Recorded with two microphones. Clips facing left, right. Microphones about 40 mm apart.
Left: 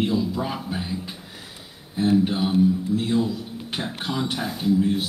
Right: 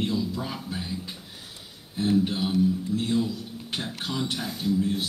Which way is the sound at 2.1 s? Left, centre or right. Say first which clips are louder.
Left 3 dB; centre.